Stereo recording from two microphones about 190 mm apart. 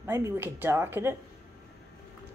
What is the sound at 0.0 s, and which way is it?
Speech, 15° right (ahead or behind).